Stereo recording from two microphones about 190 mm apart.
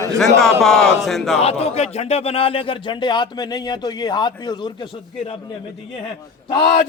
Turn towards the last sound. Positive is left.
turn(degrees=25)  # may be behind; listen again after turning